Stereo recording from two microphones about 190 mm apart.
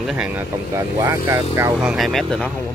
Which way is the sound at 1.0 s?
15° right (ahead or behind).